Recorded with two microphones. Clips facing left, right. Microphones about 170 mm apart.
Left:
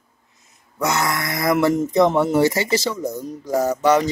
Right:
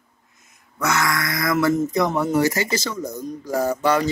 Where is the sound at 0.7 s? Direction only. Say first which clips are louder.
Left 1 dB; 25° left (ahead or behind).